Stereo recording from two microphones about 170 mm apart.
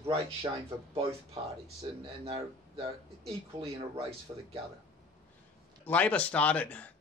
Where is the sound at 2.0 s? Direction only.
35° right (ahead or behind).